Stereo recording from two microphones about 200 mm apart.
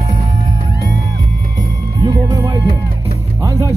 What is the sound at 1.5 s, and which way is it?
Music, 20° right (ahead or behind).